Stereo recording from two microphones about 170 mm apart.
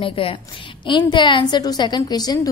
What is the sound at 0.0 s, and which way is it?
A woman's voice, 30° left (ahead or behind).